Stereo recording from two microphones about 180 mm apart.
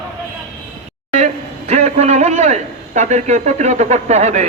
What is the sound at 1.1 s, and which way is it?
A man's voice, 40° right (ahead or behind).